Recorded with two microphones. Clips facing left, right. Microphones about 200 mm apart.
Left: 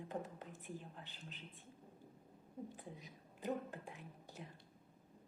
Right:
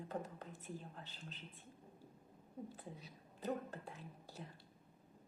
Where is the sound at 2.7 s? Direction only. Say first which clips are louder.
Even; 15° left (ahead or behind).